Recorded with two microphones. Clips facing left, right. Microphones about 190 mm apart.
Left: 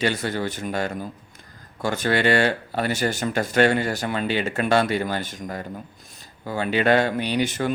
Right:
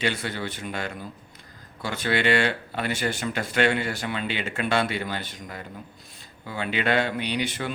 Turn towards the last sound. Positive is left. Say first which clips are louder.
# left 5 dB
turn(degrees=45)  # may be behind; listen again after turning